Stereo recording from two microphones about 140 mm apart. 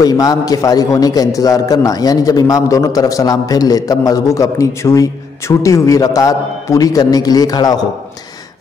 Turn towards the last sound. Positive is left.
turn(degrees=30)  # may be behind; listen again after turning